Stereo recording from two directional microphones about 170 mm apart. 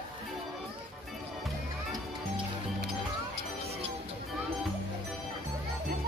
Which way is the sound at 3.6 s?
35° right (ahead or behind).